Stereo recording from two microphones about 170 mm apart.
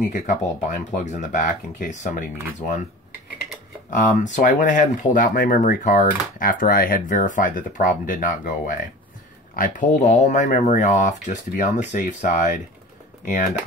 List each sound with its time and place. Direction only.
0.1 s speech: 45° left (ahead or behind)
3.9 s speech: 50° left (ahead or behind)